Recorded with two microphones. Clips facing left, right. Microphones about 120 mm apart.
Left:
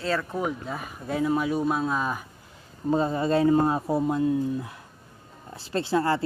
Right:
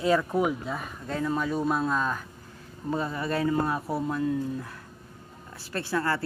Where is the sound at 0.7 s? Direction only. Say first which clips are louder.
Left 2 dB; 5° left (ahead or behind).